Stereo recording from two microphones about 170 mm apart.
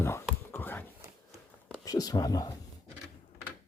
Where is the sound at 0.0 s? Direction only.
15° left (ahead or behind).